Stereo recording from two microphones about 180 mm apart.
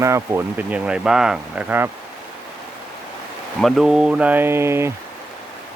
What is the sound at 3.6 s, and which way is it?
Speech, centre (ahead or behind).